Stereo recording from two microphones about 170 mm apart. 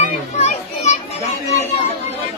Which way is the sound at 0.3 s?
40° left (ahead or behind).